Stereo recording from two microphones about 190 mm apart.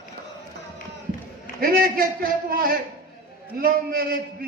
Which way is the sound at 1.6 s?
50° right (ahead or behind).